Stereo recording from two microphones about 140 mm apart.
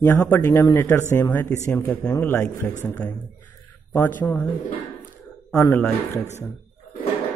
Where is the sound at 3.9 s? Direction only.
15° left (ahead or behind).